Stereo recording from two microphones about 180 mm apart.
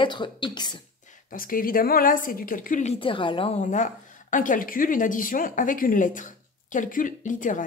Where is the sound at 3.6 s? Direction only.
45° left (ahead or behind).